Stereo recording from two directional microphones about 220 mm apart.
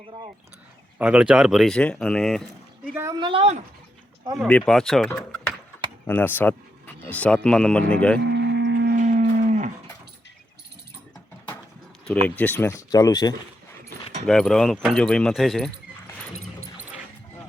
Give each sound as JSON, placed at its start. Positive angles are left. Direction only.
{"t": 0.9, "sound": "speech", "side_deg": -5}
{"t": 2.9, "sound": "a woman's voice", "side_deg": -15}
{"t": 4.4, "sound": "speech", "side_deg": 5}
{"t": 8.2, "sound": "livestock", "side_deg": -50}
{"t": 12.4, "sound": "speech", "side_deg": 10}
{"t": 14.3, "sound": "speech", "side_deg": 0}